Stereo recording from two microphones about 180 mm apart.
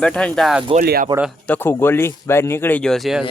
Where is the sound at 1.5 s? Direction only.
10° left (ahead or behind).